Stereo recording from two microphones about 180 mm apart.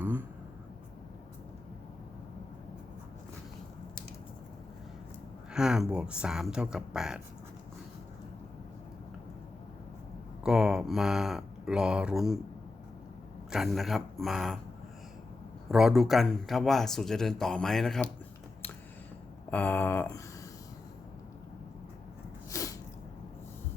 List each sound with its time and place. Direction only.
5.5 s speech: 5° right (ahead or behind)
10.4 s speech: 5° right (ahead or behind)
13.5 s speech: centre (ahead or behind)
15.7 s speech: centre (ahead or behind)
19.5 s a sound: 10° left (ahead or behind)
22.4 s sneeze: 15° left (ahead or behind)